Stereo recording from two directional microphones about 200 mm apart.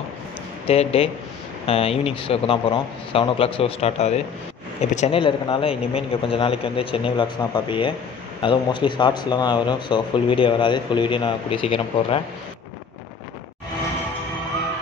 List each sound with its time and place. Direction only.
0.7 s speech: 30° left (ahead or behind)